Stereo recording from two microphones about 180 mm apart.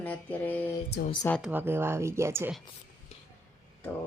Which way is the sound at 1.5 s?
10° right (ahead or behind).